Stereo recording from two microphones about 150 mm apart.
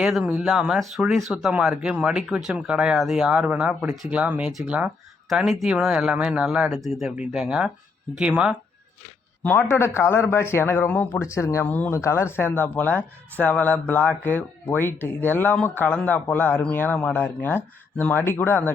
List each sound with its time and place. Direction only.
0.0 s speech: 5° right (ahead or behind)
9.4 s speech: 15° left (ahead or behind)